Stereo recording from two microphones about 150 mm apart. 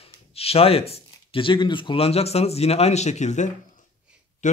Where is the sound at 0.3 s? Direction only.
40° left (ahead or behind).